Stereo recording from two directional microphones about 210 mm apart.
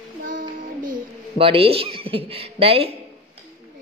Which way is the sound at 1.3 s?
25° right (ahead or behind).